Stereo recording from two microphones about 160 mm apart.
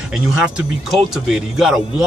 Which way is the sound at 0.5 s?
5° right (ahead or behind).